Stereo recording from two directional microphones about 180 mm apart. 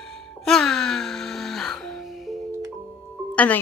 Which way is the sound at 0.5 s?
5° left (ahead or behind).